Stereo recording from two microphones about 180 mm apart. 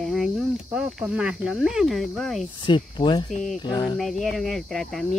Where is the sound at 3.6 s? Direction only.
25° left (ahead or behind).